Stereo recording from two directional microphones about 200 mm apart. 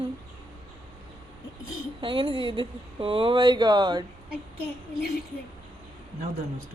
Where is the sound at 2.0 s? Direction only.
25° right (ahead or behind).